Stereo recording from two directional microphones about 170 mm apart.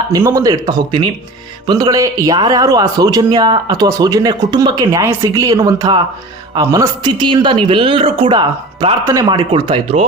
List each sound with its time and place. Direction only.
0.1 s a man's voice: 20° right (ahead or behind)